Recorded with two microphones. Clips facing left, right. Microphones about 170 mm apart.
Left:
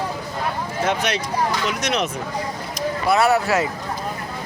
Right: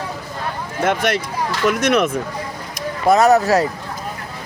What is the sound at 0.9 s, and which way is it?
Speech, 50° right (ahead or behind).